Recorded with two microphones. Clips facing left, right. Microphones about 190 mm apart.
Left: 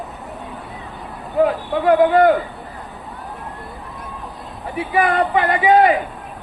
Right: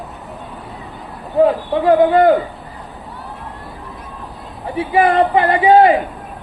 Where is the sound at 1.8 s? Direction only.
30° right (ahead or behind).